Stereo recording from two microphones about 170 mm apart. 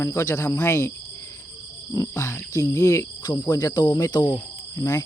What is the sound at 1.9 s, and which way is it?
Speech, 15° left (ahead or behind).